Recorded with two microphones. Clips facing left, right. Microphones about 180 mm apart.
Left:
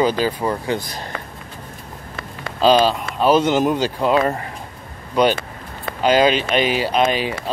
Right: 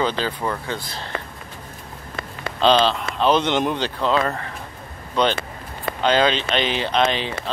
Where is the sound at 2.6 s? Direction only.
10° left (ahead or behind).